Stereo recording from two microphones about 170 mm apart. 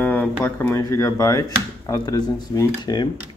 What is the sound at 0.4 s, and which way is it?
Speech, 10° left (ahead or behind).